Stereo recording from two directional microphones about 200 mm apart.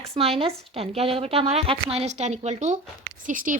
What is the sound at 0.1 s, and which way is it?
A woman's voice, 30° right (ahead or behind).